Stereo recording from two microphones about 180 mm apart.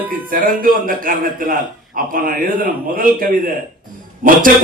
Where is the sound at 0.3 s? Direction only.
50° right (ahead or behind).